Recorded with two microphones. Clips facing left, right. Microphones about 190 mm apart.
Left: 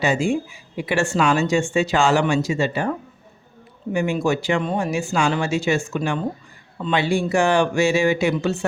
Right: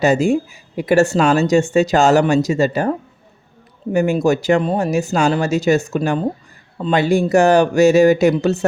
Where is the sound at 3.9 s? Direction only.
40° right (ahead or behind).